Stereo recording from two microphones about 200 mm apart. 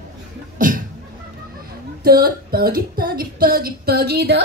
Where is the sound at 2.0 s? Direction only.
50° right (ahead or behind).